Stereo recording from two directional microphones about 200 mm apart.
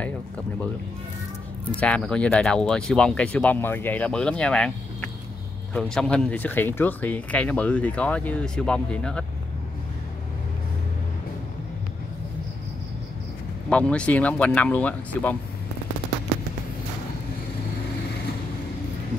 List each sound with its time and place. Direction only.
1.8 s speech: 5° left (ahead or behind)
13.7 s speech: 5° left (ahead or behind)